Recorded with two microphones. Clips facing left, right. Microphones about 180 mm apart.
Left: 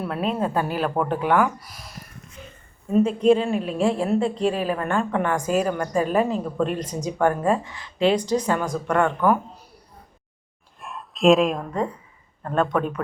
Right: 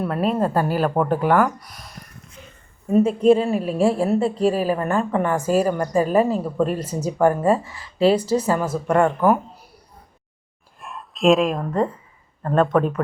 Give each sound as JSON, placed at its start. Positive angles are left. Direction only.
{"t": 0.0, "sound": "speech", "side_deg": 0}
{"t": 3.2, "sound": "speech", "side_deg": -5}
{"t": 10.8, "sound": "speech", "side_deg": 0}